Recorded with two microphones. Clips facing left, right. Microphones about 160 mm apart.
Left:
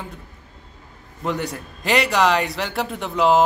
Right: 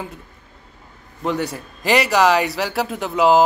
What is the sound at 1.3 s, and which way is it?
Speech, centre (ahead or behind).